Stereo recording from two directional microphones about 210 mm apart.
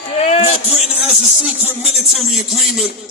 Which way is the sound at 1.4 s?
Centre (ahead or behind).